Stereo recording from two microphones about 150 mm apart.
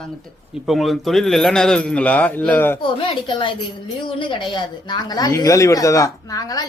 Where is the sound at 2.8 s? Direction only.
35° left (ahead or behind).